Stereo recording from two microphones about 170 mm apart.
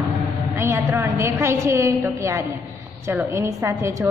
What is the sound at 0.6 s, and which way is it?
A woman's voice, 15° right (ahead or behind).